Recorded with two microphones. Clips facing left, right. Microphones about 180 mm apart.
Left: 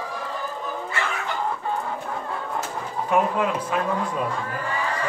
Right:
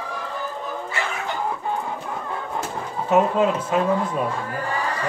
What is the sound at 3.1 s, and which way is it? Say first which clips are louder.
Speech: right 4 dB; 25° right (ahead or behind).